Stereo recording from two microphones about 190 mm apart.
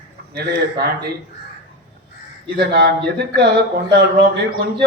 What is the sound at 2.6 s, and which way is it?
Speech, 60° right (ahead or behind).